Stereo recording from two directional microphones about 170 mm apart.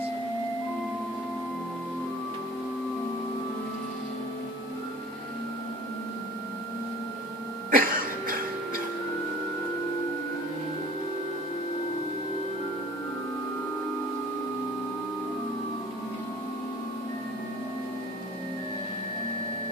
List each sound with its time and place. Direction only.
7.7 s throat clearing: 55° right (ahead or behind)